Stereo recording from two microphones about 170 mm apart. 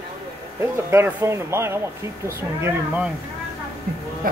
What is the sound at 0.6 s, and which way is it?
Speech, 15° right (ahead or behind).